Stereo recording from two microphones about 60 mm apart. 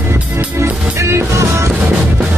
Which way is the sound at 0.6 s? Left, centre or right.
Right.